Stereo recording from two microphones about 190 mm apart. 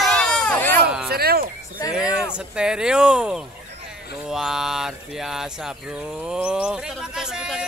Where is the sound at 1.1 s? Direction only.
55° right (ahead or behind).